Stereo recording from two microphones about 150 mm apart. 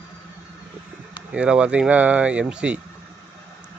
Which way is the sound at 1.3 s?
5° right (ahead or behind).